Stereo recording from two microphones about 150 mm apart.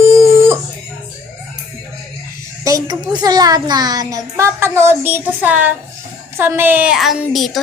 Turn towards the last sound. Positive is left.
turn(degrees=0)  # may be behind; listen again after turning